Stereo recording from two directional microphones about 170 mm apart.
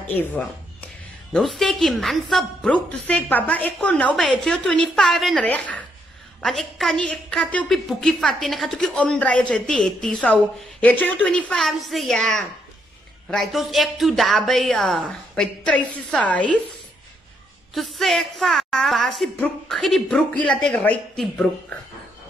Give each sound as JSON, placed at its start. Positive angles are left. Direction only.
{"t": 0.1, "sound": "a woman's voice", "side_deg": 10}
{"t": 17.7, "sound": "a woman's voice", "side_deg": 0}